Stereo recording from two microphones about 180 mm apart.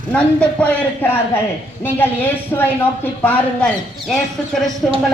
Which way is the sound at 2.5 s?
15° left (ahead or behind).